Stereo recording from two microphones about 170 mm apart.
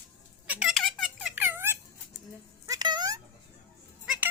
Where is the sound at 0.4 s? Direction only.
5° right (ahead or behind).